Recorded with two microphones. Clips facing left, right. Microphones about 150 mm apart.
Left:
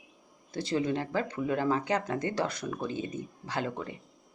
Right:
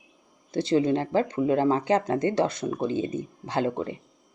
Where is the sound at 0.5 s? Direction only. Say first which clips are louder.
Right 7 dB; 25° right (ahead or behind).